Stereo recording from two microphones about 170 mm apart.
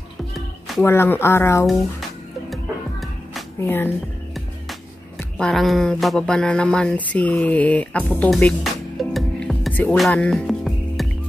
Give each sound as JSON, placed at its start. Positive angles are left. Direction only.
{"t": 0.3, "sound": "music", "side_deg": 0}
{"t": 0.8, "sound": "speech", "side_deg": 15}
{"t": 2.5, "sound": "music", "side_deg": 0}
{"t": 3.6, "sound": "speech", "side_deg": 10}
{"t": 5.4, "sound": "speech", "side_deg": 0}
{"t": 8.1, "sound": "music", "side_deg": 10}